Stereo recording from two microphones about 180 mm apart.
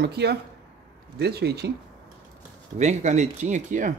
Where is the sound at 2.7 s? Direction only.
40° right (ahead or behind).